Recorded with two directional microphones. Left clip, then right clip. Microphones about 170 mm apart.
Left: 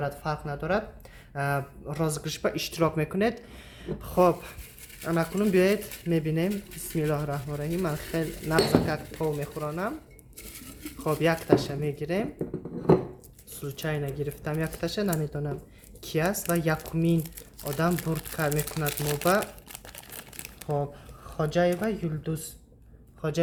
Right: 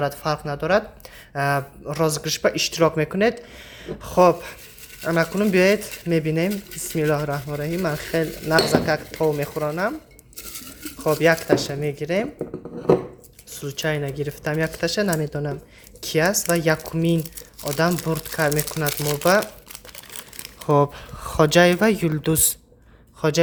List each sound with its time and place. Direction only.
0.0 s a woman's voice: 40° right (ahead or behind)
11.0 s speech: 20° right (ahead or behind)
13.5 s speech: 25° right (ahead or behind)
20.7 s speech: 70° right (ahead or behind)
23.2 s speech: 45° right (ahead or behind)